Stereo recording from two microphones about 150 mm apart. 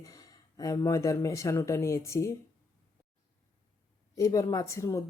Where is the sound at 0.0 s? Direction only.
25° left (ahead or behind).